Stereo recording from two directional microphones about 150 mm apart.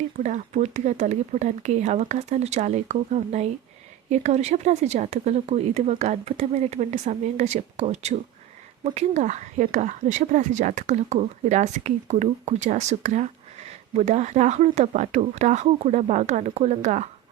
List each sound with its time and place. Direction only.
0.2 s speech: 55° right (ahead or behind)